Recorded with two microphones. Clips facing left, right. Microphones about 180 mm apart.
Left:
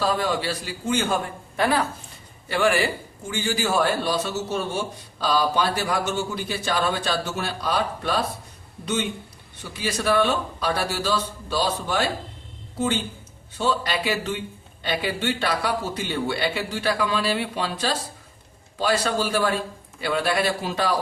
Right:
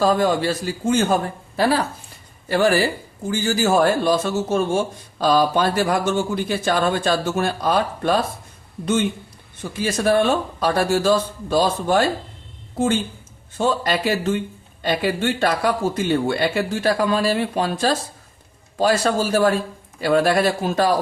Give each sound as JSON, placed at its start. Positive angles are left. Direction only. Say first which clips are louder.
{"t": 0.0, "sound": "a man's voice", "louder": "right 6 dB", "side_deg": -45}
{"t": 9.7, "sound": "a man's voice", "louder": "right 4 dB", "side_deg": -45}
{"t": 13.6, "sound": "a man's voice", "louder": "right 4 dB", "side_deg": -45}